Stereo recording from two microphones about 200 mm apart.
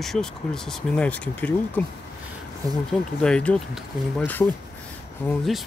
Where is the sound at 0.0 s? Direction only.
Centre (ahead or behind).